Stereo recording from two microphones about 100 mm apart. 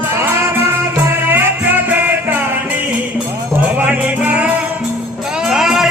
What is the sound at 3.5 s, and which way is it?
Music, 15° right (ahead or behind).